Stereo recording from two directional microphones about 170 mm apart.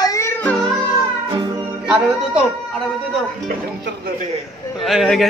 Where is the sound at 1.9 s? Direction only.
5° right (ahead or behind).